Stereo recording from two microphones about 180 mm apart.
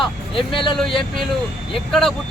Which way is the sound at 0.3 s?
30° left (ahead or behind).